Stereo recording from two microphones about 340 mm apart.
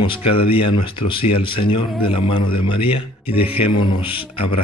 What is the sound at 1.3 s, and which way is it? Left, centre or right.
Speech, centre.